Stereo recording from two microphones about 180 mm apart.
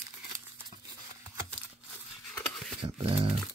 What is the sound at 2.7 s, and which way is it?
Speech, 35° right (ahead or behind).